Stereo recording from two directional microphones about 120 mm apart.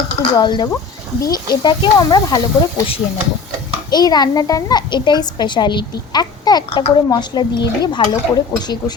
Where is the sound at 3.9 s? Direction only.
35° left (ahead or behind).